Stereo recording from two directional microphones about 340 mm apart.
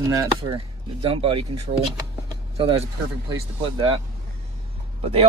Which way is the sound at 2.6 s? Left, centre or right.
Centre.